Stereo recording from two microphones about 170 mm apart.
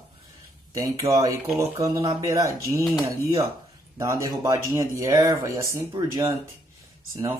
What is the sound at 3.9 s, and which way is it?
Speech, 20° right (ahead or behind).